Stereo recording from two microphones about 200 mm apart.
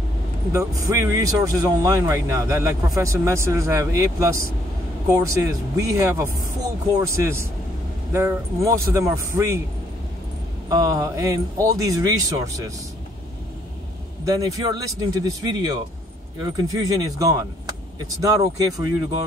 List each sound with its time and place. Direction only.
0.5 s speech: 15° right (ahead or behind)
10.7 s speech: 15° right (ahead or behind)
14.2 s speech: 15° right (ahead or behind)